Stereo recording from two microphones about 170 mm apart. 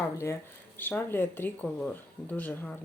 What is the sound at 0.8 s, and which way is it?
Speech, 10° left (ahead or behind).